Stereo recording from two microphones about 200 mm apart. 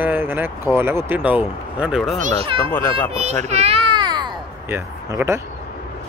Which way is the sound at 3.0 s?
30° right (ahead or behind).